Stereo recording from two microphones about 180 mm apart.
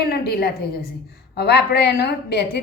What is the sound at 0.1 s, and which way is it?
A woman's voice, 60° left (ahead or behind).